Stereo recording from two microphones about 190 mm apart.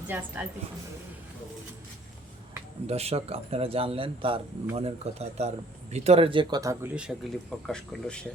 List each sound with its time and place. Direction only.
0.1 s a woman's voice: 10° right (ahead or behind)
2.8 s speech: 35° right (ahead or behind); by 6.9 s 15° right (ahead or behind)
6.9 s speech: 5° right (ahead or behind)